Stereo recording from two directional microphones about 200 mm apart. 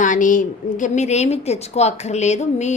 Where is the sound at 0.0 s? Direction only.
40° left (ahead or behind).